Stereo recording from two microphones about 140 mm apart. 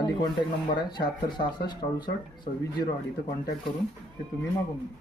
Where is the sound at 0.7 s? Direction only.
30° left (ahead or behind).